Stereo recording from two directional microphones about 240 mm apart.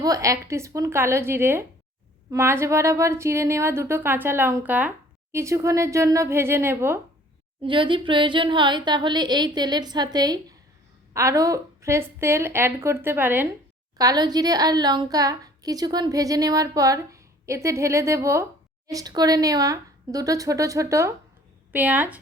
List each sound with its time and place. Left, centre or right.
0.0 s a woman's voice: centre
7.6 s a woman's voice: right